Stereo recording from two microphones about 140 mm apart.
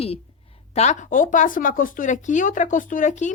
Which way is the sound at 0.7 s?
55° left (ahead or behind).